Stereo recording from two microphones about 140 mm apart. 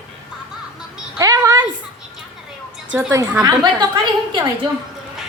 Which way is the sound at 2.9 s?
20° right (ahead or behind).